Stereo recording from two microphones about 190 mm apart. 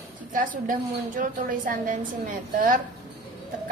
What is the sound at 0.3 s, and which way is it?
A woman's voice, 45° right (ahead or behind).